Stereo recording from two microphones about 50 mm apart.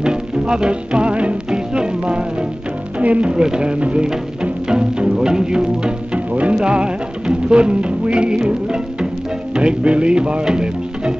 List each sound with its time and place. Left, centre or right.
0.0 s music: centre